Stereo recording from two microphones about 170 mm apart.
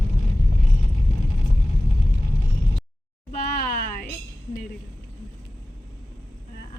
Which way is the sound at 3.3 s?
60° left (ahead or behind).